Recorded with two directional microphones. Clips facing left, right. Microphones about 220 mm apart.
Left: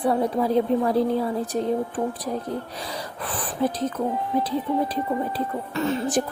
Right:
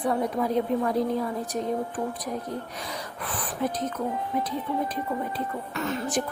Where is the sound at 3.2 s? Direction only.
30° left (ahead or behind).